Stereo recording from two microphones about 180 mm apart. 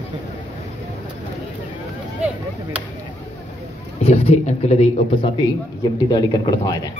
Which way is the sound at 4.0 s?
35° left (ahead or behind).